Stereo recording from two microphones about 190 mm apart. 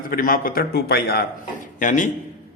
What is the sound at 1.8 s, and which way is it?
Speech, 40° left (ahead or behind).